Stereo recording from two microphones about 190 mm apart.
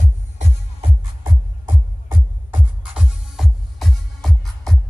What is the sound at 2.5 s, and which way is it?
Music, 5° right (ahead or behind).